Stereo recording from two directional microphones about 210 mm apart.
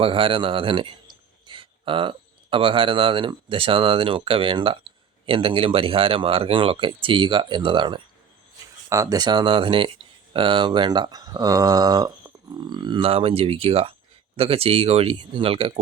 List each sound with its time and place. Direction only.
0.0 s a man's voice: 25° right (ahead or behind)